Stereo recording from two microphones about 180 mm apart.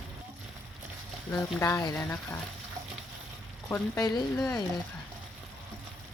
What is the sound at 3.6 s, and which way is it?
Speech, 15° left (ahead or behind).